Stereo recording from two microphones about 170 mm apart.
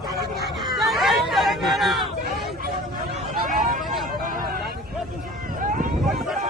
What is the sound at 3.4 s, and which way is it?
Vehicle, 50° right (ahead or behind).